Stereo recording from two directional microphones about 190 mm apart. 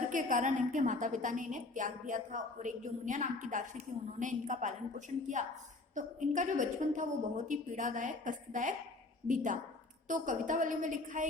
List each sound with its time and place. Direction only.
0.1 s a woman's voice: 45° right (ahead or behind)